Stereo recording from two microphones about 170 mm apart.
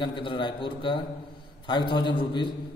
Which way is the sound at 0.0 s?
30° left (ahead or behind).